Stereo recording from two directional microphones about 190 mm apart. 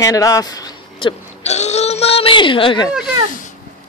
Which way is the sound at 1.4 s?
35° left (ahead or behind).